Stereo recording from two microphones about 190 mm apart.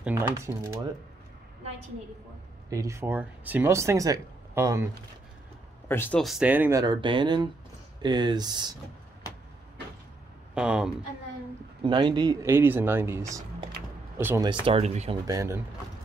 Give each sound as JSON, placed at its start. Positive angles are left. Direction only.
{"t": 0.0, "sound": "speech", "side_deg": -15}
{"t": 2.7, "sound": "speech", "side_deg": -15}
{"t": 5.9, "sound": "speech", "side_deg": 10}
{"t": 6.8, "sound": "speech", "side_deg": -25}
{"t": 10.5, "sound": "speech", "side_deg": -5}
{"t": 11.8, "sound": "speech", "side_deg": -25}
{"t": 14.5, "sound": "speech", "side_deg": -30}
{"t": 15.2, "sound": "speech", "side_deg": -15}